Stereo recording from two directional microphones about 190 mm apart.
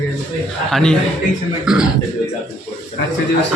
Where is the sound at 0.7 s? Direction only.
5° left (ahead or behind).